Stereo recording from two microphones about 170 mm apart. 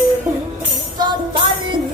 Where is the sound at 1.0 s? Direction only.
30° right (ahead or behind).